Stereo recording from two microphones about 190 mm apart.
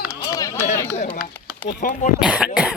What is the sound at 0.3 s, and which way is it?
Run, 15° left (ahead or behind).